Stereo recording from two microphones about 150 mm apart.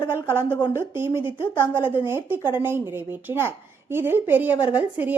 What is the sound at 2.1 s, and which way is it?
A woman's voice, 15° right (ahead or behind).